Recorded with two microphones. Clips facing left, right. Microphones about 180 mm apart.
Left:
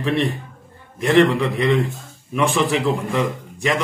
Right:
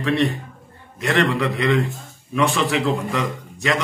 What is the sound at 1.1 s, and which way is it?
Speech, 10° left (ahead or behind).